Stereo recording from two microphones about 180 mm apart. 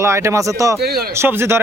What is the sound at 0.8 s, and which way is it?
Speech, 60° right (ahead or behind).